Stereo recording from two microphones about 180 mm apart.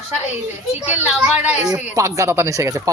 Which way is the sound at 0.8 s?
10° right (ahead or behind).